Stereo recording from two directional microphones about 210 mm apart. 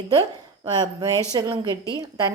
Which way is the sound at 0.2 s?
20° right (ahead or behind).